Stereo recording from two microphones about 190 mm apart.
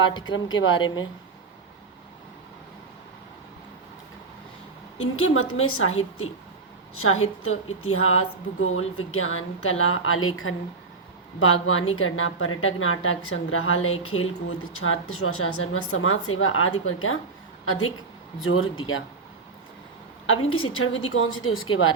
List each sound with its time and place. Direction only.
0.1 s a woman's voice: 25° left (ahead or behind)
4.9 s a woman's voice: 90° left
20.2 s a woman's voice: 90° left